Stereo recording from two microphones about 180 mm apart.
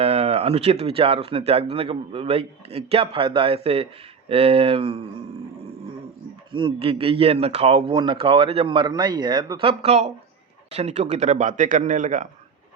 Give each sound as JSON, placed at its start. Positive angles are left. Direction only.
{"t": 0.0, "sound": "a man's voice", "side_deg": -35}
{"t": 6.5, "sound": "a man's voice", "side_deg": -30}